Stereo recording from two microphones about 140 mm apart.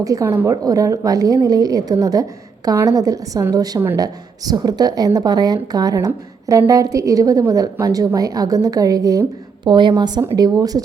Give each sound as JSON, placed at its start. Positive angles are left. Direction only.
{"t": 0.0, "sound": "a woman's voice", "side_deg": -25}